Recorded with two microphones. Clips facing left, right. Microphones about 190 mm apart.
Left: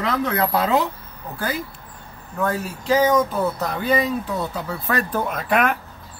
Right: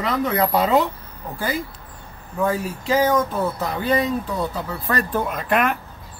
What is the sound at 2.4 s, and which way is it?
Speech, 5° right (ahead or behind).